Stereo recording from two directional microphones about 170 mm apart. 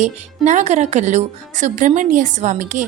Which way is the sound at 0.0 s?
45° right (ahead or behind).